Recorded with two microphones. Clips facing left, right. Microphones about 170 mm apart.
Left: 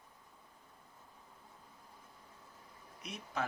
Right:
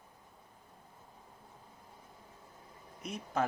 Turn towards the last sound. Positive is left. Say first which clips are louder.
# right 6 dB
turn(degrees=-45)  # may be behind; listen again after turning